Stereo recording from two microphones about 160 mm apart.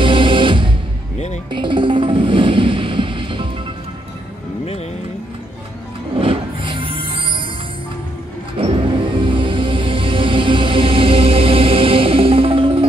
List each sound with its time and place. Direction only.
0.0 s music: 30° right (ahead or behind)
6.1 s music: 30° right (ahead or behind)
8.5 s music: 35° right (ahead or behind)